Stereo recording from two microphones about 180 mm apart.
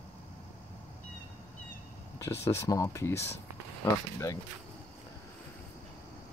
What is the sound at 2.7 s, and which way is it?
Speech, 15° left (ahead or behind).